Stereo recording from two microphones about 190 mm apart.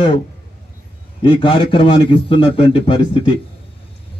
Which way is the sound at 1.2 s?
25° left (ahead or behind).